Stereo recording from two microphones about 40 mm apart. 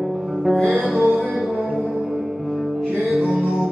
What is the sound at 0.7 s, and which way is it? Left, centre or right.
Music, right.